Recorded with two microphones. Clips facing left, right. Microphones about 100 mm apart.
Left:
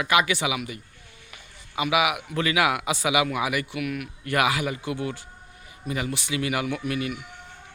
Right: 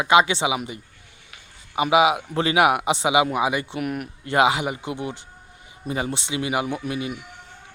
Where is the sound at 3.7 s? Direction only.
40° right (ahead or behind).